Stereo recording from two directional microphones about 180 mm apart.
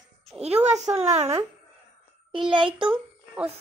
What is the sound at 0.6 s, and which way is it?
A child's voice, 40° right (ahead or behind).